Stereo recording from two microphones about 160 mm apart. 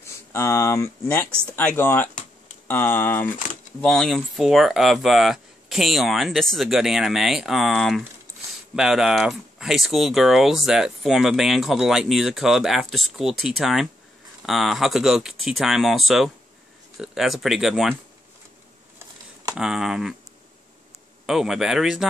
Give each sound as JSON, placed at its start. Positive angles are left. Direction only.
{"t": 0.0, "sound": "speech", "side_deg": 15}
{"t": 3.8, "sound": "speech", "side_deg": 5}
{"t": 19.5, "sound": "speech", "side_deg": -5}
{"t": 21.3, "sound": "speech", "side_deg": -5}